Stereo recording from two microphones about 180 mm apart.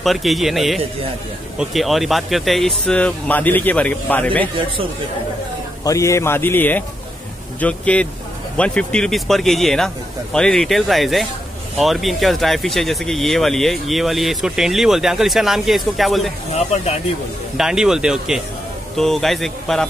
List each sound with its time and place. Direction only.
0.0 s speech: centre (ahead or behind)
5.9 s speech: 15° left (ahead or behind); by 16.3 s centre (ahead or behind)
16.5 s speech: 35° left (ahead or behind)
17.6 s speech: 5° right (ahead or behind)